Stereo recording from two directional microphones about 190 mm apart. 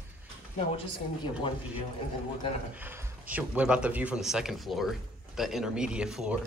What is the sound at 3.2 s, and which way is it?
Speech, 10° right (ahead or behind).